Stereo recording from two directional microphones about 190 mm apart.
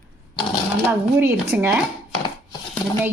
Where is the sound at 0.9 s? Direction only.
10° right (ahead or behind).